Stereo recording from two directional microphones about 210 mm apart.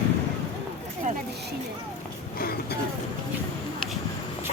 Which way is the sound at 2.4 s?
45° left (ahead or behind).